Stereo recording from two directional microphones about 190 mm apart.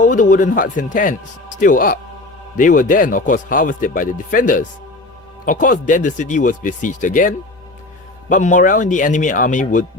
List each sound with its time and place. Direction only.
0.0 s speech: 40° left (ahead or behind)